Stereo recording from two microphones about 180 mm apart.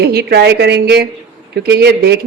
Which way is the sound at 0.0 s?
60° right (ahead or behind).